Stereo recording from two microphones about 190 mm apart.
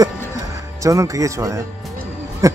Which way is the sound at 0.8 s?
15° right (ahead or behind).